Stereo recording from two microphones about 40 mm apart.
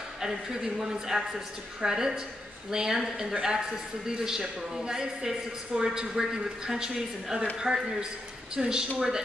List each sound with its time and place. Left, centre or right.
0.2 s speech: centre